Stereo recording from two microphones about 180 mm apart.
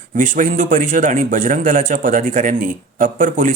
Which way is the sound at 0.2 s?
45° right (ahead or behind).